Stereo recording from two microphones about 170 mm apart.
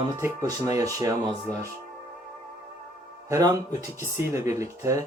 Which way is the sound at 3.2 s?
20° right (ahead or behind).